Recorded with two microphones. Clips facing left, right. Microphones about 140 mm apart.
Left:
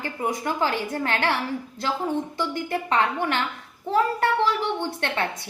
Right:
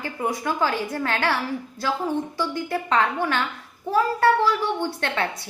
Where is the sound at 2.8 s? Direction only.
20° left (ahead or behind).